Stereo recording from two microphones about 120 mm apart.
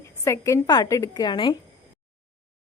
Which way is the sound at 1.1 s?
40° left (ahead or behind).